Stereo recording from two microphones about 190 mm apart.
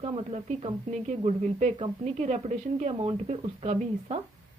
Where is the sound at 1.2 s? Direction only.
40° right (ahead or behind).